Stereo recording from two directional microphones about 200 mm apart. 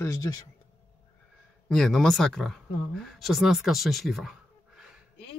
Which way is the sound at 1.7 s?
Centre (ahead or behind).